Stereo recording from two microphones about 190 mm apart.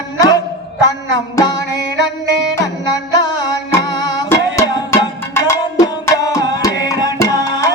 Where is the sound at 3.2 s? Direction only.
20° left (ahead or behind).